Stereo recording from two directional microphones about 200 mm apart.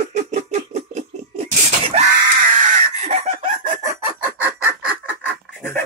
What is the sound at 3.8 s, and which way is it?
Chicken, 15° right (ahead or behind).